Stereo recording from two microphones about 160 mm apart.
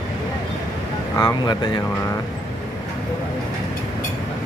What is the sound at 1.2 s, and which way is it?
Speech, 25° left (ahead or behind).